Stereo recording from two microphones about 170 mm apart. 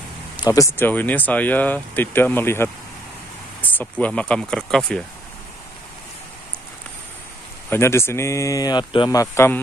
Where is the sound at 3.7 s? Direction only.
10° left (ahead or behind).